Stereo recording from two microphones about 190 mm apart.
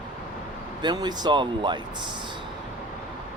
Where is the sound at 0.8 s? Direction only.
20° right (ahead or behind).